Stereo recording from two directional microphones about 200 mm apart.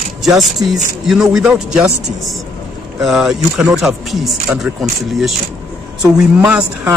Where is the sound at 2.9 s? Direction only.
Centre (ahead or behind).